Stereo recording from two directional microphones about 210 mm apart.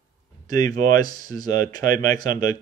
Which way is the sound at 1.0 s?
20° left (ahead or behind).